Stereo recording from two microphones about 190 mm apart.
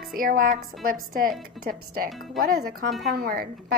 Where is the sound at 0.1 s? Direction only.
50° right (ahead or behind).